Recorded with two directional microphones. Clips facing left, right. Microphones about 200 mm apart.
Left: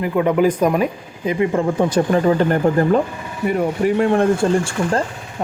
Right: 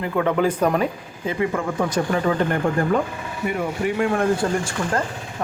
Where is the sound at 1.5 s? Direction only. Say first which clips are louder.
Left 6 dB; 30° left (ahead or behind).